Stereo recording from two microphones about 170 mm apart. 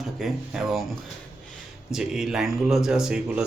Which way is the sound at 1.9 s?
5° right (ahead or behind).